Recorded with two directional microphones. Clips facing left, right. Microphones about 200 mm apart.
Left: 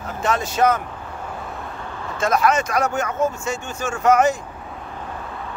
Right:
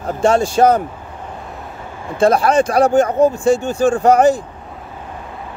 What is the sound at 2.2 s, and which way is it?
Speech, 30° right (ahead or behind).